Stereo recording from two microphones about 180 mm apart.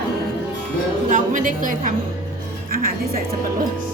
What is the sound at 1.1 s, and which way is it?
A woman's voice, 45° right (ahead or behind).